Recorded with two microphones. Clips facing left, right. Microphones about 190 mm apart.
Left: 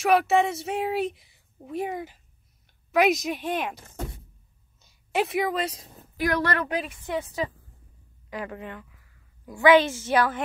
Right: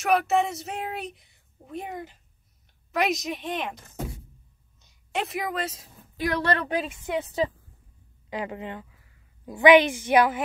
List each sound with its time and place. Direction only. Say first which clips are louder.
0.0 s speech: left 2 dB; centre (ahead or behind)
4.8 s a woman's voice: left 4 dB; centre (ahead or behind)
6.1 s a woman's voice: even; 25° right (ahead or behind)